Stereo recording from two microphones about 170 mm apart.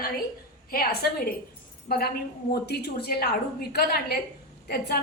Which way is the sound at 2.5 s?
75° left (ahead or behind).